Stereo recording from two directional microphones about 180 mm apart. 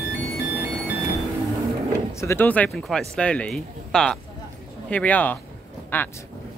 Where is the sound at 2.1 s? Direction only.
15° left (ahead or behind).